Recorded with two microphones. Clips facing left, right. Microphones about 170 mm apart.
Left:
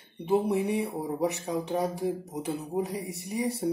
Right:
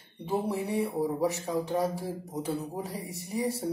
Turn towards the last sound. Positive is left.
turn(degrees=20)  # may be behind; listen again after turning